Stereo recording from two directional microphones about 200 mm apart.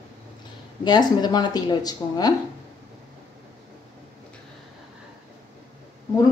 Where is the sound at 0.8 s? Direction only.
20° left (ahead or behind).